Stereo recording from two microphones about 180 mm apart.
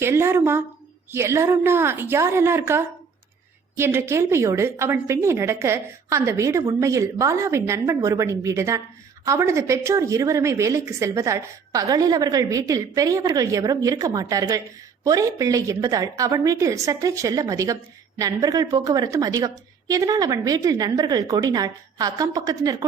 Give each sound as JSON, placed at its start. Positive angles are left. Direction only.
{"t": 0.0, "sound": "a woman's voice", "side_deg": -15}